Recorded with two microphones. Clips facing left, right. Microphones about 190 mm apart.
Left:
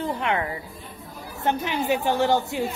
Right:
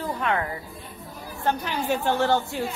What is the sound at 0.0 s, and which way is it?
A woman's voice, 25° left (ahead or behind).